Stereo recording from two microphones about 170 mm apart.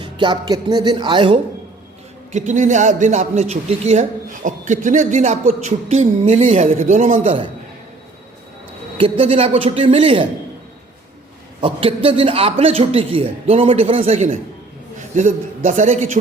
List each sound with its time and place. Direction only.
0.0 s speech: 30° right (ahead or behind)
2.3 s a man's voice: 45° right (ahead or behind)
9.0 s a man's voice: 30° right (ahead or behind)
11.6 s a man's voice: 30° right (ahead or behind)